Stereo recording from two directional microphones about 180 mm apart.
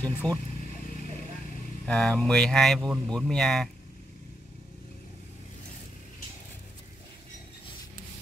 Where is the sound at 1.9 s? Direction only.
5° left (ahead or behind).